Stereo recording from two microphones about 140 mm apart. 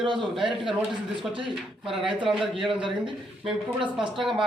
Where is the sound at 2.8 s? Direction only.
35° right (ahead or behind).